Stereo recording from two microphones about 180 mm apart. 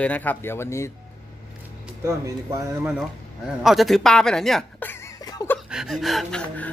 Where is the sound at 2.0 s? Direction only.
15° right (ahead or behind).